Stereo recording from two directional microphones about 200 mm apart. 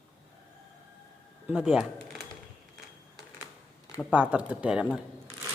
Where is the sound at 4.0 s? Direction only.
5° right (ahead or behind).